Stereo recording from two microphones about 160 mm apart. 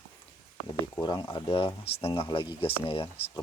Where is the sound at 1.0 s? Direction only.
25° left (ahead or behind).